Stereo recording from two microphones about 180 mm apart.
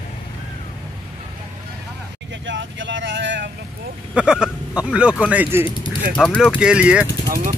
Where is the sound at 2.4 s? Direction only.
90° right.